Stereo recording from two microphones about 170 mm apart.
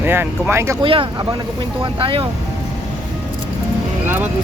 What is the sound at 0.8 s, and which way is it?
Speech, 30° right (ahead or behind).